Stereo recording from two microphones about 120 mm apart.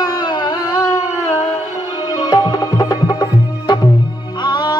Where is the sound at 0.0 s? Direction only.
35° left (ahead or behind).